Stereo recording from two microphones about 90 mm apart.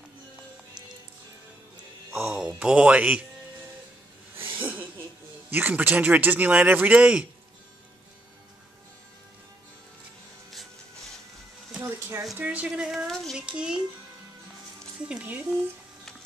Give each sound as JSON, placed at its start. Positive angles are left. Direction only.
{"t": 2.1, "sound": "speech", "side_deg": -10}
{"t": 4.4, "sound": "a sound", "side_deg": -20}
{"t": 5.5, "sound": "speech", "side_deg": -20}
{"t": 10.5, "sound": "rub", "side_deg": 0}
{"t": 11.8, "sound": "a sound", "side_deg": -30}
{"t": 12.4, "sound": "speech", "side_deg": -15}
{"t": 13.0, "sound": "a sound", "side_deg": 0}
{"t": 13.5, "sound": "speech", "side_deg": -10}
{"t": 15.0, "sound": "speech", "side_deg": -15}